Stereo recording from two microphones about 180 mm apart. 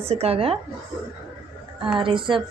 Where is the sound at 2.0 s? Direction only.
30° right (ahead or behind).